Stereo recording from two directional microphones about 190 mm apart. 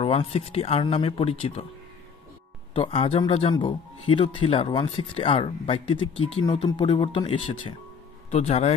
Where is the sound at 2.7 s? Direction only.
30° left (ahead or behind).